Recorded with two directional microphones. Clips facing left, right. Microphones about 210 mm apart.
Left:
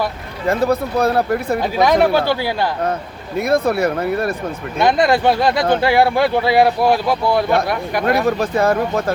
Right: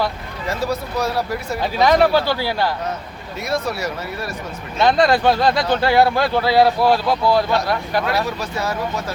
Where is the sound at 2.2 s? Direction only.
15° left (ahead or behind).